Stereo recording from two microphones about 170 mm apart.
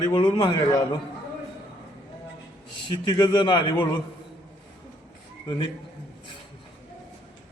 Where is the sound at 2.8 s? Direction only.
25° left (ahead or behind).